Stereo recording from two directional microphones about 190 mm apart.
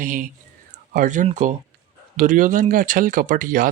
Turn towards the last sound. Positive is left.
turn(degrees=-45)  # may be behind; listen again after turning